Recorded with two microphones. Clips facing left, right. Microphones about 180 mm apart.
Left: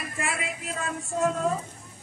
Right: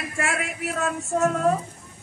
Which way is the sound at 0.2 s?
75° right (ahead or behind).